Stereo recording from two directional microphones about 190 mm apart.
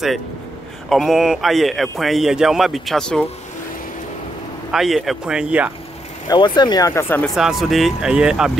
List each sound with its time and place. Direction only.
0.8 s a man's voice: centre (ahead or behind)
4.6 s a man's voice: centre (ahead or behind)
6.2 s speech: 20° left (ahead or behind)
7.3 s a man's voice: centre (ahead or behind)